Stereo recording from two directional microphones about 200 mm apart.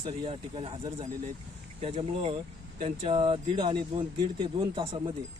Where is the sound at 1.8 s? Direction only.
30° right (ahead or behind).